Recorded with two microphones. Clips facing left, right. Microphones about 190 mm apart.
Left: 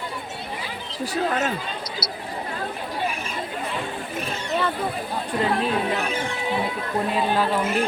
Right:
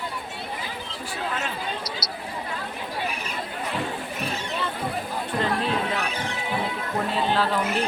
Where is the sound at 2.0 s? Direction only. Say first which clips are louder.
Left 2 dB; 60° left (ahead or behind).